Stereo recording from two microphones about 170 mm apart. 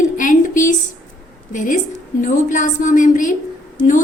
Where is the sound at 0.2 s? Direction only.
50° left (ahead or behind).